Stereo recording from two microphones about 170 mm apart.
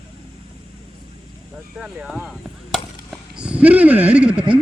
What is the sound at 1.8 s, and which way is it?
Chop, 5° right (ahead or behind).